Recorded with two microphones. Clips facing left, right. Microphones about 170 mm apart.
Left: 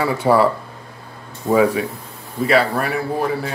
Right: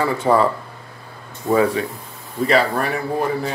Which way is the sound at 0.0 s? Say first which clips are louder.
Left 1 dB; 10° left (ahead or behind).